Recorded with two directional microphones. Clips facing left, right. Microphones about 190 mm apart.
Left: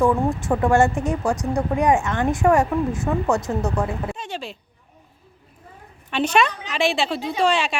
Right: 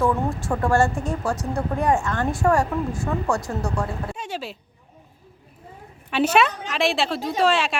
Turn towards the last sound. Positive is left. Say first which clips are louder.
# even
turn(degrees=0)  # may be behind; listen again after turning